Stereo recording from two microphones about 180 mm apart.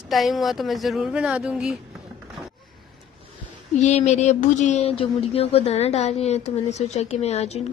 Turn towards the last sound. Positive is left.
turn(degrees=35)  # may be behind; listen again after turning